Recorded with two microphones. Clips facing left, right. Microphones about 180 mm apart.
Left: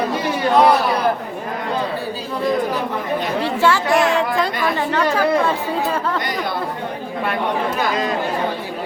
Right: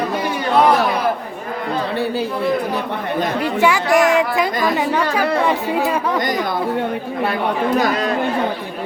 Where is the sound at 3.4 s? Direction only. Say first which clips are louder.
Even; 15° right (ahead or behind).